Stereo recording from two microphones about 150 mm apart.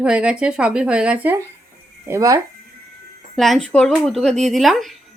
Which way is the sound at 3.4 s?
5° left (ahead or behind).